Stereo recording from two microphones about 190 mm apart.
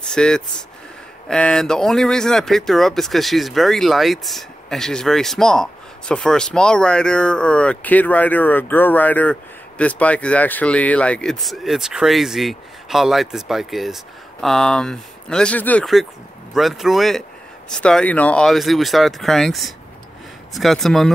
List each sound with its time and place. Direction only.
0.1 s speech: 5° left (ahead or behind)